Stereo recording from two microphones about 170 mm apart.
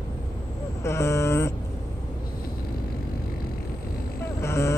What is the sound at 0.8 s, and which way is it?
Vehicle, 15° left (ahead or behind).